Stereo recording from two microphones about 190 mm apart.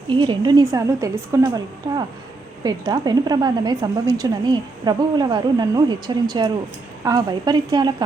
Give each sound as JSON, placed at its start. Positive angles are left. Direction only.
{"t": 0.1, "sound": "a woman's voice", "side_deg": -25}
{"t": 2.6, "sound": "a woman's voice", "side_deg": -20}